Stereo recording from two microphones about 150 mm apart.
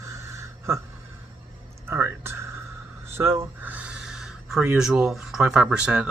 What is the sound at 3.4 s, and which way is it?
Speech, 10° right (ahead or behind).